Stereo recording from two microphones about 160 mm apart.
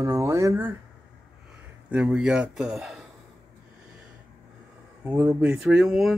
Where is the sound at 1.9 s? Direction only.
5° right (ahead or behind).